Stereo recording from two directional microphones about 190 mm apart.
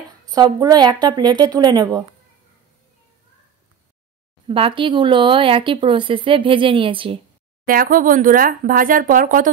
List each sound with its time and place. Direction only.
0.3 s speech: 20° right (ahead or behind)
4.5 s speech: 30° right (ahead or behind)
7.6 s speech: 50° right (ahead or behind)